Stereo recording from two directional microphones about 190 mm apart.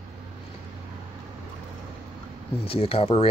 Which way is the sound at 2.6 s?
30° left (ahead or behind).